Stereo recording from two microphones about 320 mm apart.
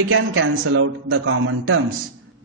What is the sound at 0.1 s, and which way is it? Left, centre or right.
A man's voice, right.